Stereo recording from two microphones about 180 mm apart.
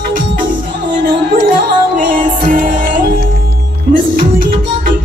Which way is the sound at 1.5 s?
50° right (ahead or behind).